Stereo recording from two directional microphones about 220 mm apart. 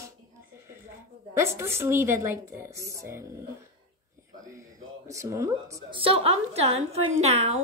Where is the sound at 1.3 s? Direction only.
10° right (ahead or behind).